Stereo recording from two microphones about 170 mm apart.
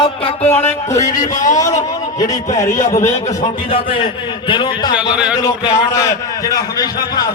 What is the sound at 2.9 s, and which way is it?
A man's voice, 45° left (ahead or behind).